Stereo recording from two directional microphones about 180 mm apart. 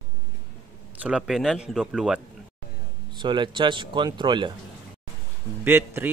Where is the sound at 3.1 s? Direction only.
25° right (ahead or behind).